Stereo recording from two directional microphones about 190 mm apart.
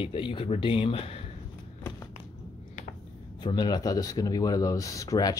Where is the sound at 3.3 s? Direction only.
25° left (ahead or behind).